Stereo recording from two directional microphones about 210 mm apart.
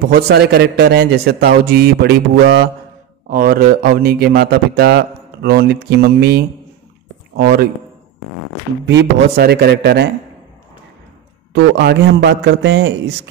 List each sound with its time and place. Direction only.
0.1 s a man's voice: 50° right (ahead or behind)
8.8 s a man's voice: 55° right (ahead or behind)
11.5 s a man's voice: 55° right (ahead or behind)